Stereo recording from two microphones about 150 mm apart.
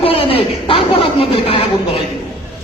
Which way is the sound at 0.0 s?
40° left (ahead or behind).